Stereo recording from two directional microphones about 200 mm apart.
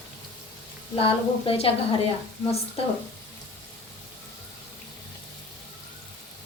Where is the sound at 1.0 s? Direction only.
25° left (ahead or behind).